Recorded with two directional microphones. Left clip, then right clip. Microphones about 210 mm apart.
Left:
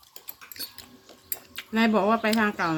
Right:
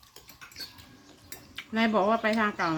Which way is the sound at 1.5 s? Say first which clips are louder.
Left 2 dB; 35° left (ahead or behind).